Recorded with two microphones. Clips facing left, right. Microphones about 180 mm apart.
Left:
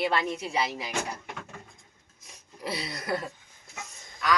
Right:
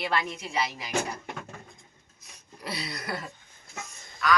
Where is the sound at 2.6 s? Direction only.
25° left (ahead or behind).